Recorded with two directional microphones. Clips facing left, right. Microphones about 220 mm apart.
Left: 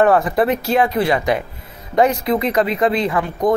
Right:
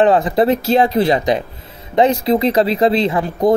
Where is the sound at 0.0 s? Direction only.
20° right (ahead or behind).